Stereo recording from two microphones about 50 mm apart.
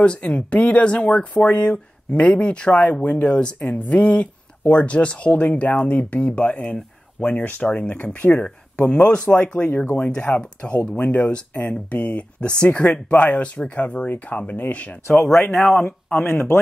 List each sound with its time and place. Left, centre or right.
0.0 s speech: left
9.7 s speech: left
9.9 s speech: left
11.0 s speech: left
15.1 s speech: centre
16.1 s speech: left